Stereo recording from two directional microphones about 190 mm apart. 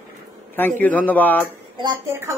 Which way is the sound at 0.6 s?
10° left (ahead or behind).